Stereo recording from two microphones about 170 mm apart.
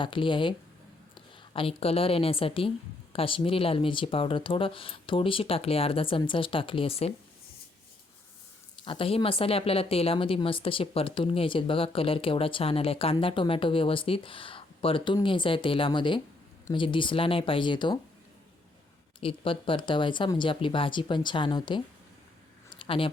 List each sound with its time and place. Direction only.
0.0 s speech: 30° left (ahead or behind)
8.8 s speech: 30° left (ahead or behind)
19.2 s speech: 30° left (ahead or behind)
22.7 s a sound: 30° left (ahead or behind)